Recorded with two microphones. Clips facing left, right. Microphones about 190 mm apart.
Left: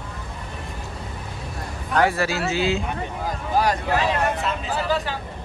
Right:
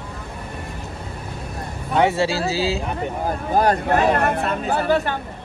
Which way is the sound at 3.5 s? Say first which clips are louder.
Right 3 dB; 55° right (ahead or behind).